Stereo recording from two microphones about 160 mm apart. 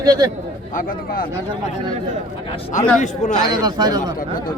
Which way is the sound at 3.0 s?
50° left (ahead or behind).